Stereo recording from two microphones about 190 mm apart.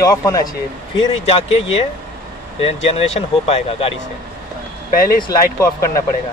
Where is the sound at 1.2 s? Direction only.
30° left (ahead or behind).